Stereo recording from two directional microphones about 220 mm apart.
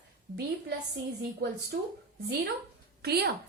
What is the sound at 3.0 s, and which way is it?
Speech, 45° right (ahead or behind).